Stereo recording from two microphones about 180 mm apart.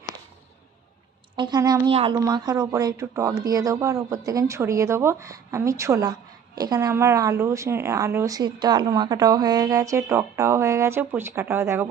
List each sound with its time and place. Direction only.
1.4 s a woman's voice: 25° right (ahead or behind)